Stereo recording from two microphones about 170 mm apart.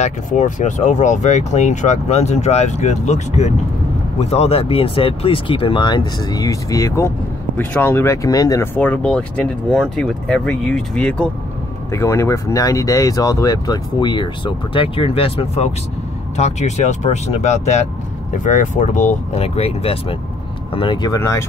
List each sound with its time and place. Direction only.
0.0 s speech: 45° left (ahead or behind); by 8.6 s 20° left (ahead or behind)
8.7 s speech: 10° left (ahead or behind)